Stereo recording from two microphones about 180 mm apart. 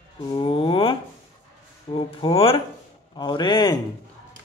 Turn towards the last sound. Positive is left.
turn(degrees=25)  # may be behind; listen again after turning